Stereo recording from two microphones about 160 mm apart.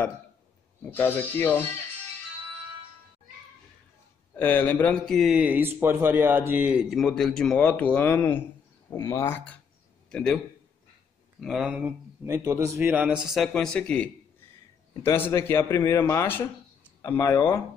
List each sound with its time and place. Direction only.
0.8 s a man's voice: 10° left (ahead or behind)
4.4 s a man's voice: 10° left (ahead or behind)
11.4 s a man's voice: 5° right (ahead or behind); by 17.4 s 15° left (ahead or behind)